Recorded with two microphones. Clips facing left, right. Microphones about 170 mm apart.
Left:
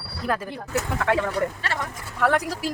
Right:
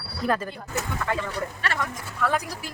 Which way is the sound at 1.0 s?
70° left (ahead or behind).